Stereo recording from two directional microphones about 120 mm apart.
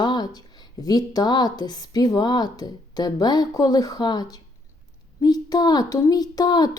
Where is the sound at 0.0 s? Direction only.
35° left (ahead or behind).